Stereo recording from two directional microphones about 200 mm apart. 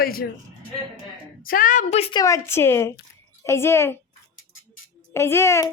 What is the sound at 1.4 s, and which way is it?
Speech, 45° left (ahead or behind).